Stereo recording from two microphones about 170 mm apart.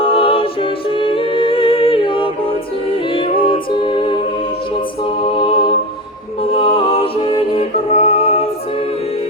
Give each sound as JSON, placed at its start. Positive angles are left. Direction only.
{"t": 0.0, "sound": "a capella", "side_deg": 30}
{"t": 5.2, "sound": "music", "side_deg": 30}